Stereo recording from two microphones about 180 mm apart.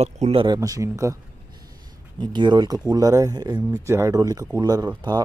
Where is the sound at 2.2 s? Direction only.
25° right (ahead or behind).